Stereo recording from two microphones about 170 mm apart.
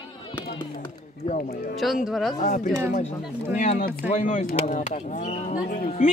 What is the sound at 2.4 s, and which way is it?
Speech, 50° left (ahead or behind).